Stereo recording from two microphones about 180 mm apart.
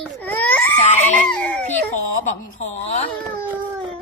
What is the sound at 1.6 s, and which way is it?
Speech, 40° left (ahead or behind).